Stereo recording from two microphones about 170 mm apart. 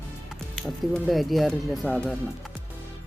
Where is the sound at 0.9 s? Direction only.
Centre (ahead or behind).